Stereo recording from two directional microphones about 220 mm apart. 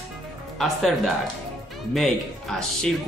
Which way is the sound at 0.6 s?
Centre (ahead or behind).